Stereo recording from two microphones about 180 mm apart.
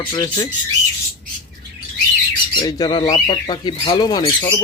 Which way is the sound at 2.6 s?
20° left (ahead or behind).